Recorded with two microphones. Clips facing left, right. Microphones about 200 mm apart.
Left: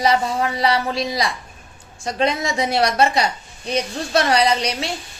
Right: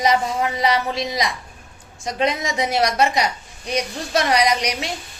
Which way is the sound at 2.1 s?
30° left (ahead or behind).